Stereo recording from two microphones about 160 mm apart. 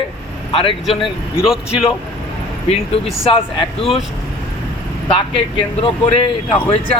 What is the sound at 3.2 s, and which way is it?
Speech, 35° left (ahead or behind).